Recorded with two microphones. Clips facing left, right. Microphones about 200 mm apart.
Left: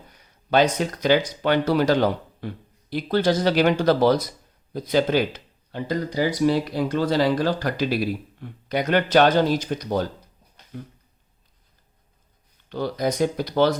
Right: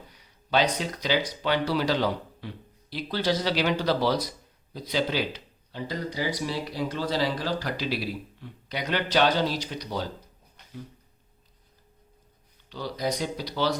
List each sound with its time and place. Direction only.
0.1 s speech: 50° left (ahead or behind)
12.6 s speech: 55° left (ahead or behind)